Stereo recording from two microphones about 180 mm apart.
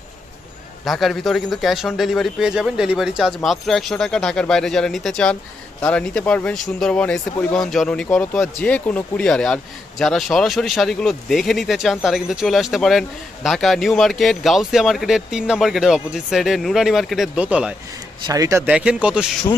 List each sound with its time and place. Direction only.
0.8 s speech: centre (ahead or behind)
18.2 s speech: 20° right (ahead or behind)
18.7 s speech: 5° right (ahead or behind)